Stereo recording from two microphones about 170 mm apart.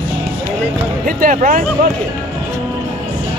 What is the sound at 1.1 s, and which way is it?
Speech, 50° right (ahead or behind).